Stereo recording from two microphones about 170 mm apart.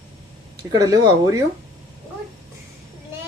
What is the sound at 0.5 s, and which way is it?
Speech, 20° right (ahead or behind).